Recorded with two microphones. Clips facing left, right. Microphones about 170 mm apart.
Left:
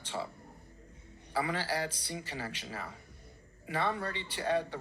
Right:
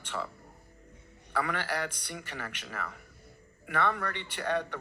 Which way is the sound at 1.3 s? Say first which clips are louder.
Right 1 dB; 60° right (ahead or behind).